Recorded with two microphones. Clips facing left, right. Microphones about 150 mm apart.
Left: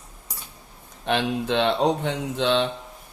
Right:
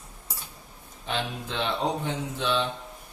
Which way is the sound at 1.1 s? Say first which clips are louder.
Left 8 dB; 70° left (ahead or behind).